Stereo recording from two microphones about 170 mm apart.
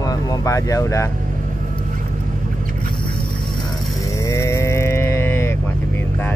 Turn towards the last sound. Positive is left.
turn(degrees=15)  # may be behind; listen again after turning